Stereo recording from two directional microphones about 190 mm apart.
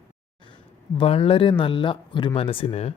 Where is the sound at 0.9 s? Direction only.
30° left (ahead or behind).